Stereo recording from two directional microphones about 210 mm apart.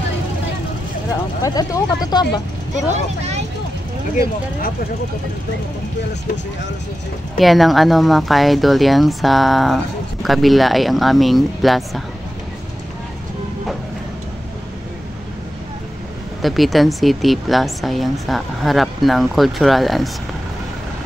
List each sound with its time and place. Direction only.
1.4 s speech: 15° left (ahead or behind)
2.9 s speech: 30° right (ahead or behind)
7.3 s speech: centre (ahead or behind)
16.3 s speech: centre (ahead or behind)